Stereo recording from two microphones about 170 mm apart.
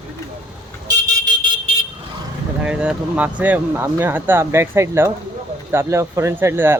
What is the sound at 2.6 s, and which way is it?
Speech, 5° right (ahead or behind).